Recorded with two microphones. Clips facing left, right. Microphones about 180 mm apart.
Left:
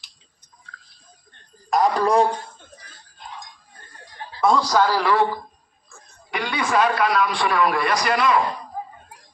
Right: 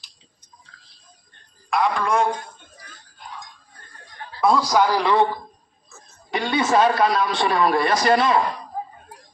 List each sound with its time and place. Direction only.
1.7 s a man's voice: 40° left (ahead or behind)
3.2 s a sound: 20° left (ahead or behind)
4.4 s a man's voice: 5° right (ahead or behind); by 8.4 s 30° right (ahead or behind)